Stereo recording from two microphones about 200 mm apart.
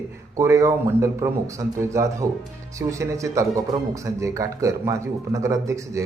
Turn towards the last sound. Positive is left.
turn(degrees=-15)  # may be behind; listen again after turning